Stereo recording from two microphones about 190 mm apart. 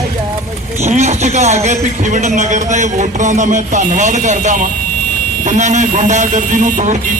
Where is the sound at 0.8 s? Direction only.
35° right (ahead or behind).